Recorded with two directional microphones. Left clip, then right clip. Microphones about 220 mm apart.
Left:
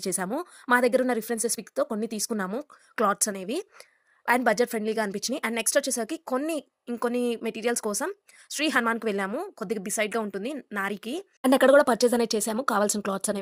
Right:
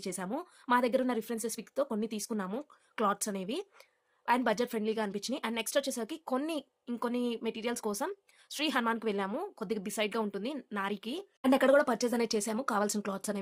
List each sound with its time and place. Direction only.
0.0 s speech: 30° left (ahead or behind)
11.4 s speech: 35° left (ahead or behind)